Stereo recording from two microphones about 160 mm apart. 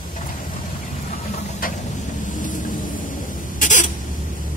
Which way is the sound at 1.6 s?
60° left (ahead or behind).